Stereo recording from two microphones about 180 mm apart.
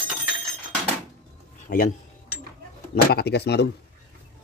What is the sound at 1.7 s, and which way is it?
Speech, 45° left (ahead or behind).